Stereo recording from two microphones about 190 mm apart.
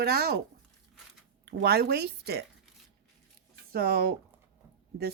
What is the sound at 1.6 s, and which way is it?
Speech, 60° right (ahead or behind).